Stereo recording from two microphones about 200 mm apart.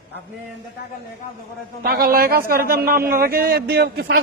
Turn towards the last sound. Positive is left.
turn(degrees=-55)  # may be behind; listen again after turning